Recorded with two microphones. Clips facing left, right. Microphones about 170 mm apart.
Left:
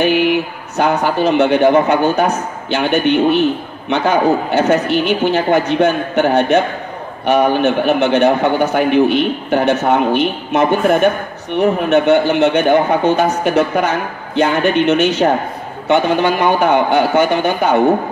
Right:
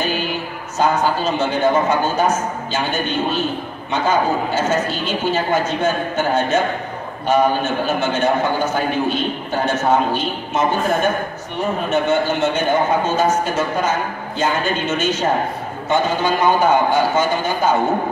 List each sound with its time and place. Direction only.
0.0 s speech: 65° left (ahead or behind)